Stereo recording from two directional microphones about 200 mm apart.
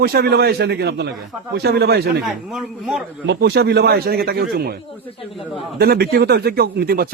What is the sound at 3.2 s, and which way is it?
A man's voice, 55° right (ahead or behind).